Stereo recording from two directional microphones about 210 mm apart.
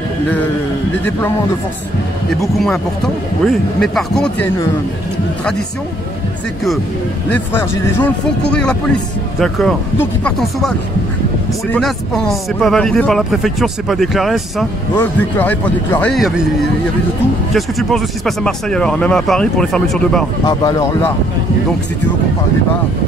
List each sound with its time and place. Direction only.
3.4 s a man's voice: centre (ahead or behind)
7.2 s a man's voice: 10° left (ahead or behind)
11.7 s a man's voice: centre (ahead or behind)
17.5 s a man's voice: centre (ahead or behind)
20.4 s speech: 15° left (ahead or behind)